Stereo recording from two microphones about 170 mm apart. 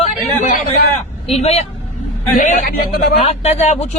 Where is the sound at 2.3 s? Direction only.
50° left (ahead or behind).